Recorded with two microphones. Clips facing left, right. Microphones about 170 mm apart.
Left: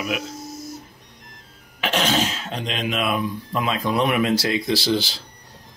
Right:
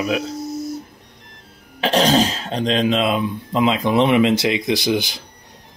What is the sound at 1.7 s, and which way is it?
Speech, 35° right (ahead or behind).